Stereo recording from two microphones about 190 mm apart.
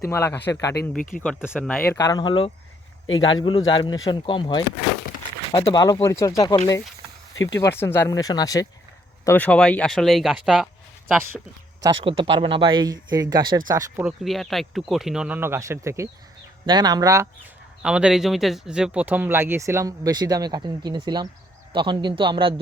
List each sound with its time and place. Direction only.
0.1 s speech: 10° left (ahead or behind)
2.0 s speech: 20° left (ahead or behind)
3.1 s a man's voice: 90° left
3.7 s speech: 25° left (ahead or behind)
7.6 s speech: 10° left (ahead or behind)
9.2 s speech: 10° left (ahead or behind)
11.8 s speech: 25° right (ahead or behind)
14.0 s speech: centre (ahead or behind); by 17.2 s 15° right (ahead or behind)
17.8 s speech: 5° right (ahead or behind); by 22.6 s 25° right (ahead or behind)